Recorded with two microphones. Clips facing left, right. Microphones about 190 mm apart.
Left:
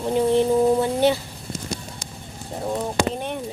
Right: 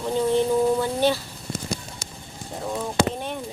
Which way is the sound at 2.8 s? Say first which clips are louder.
Right 1 dB; 15° left (ahead or behind).